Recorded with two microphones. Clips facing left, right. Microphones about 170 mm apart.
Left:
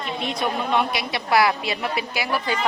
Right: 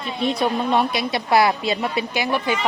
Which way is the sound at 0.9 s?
25° right (ahead or behind).